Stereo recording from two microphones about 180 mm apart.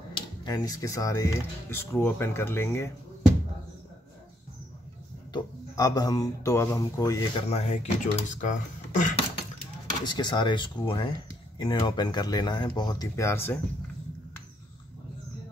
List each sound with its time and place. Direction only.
0.4 s speech: 20° left (ahead or behind)
5.3 s speech: 20° left (ahead or behind)
7.4 s speech: 40° left (ahead or behind)
10.0 s speech: 25° left (ahead or behind)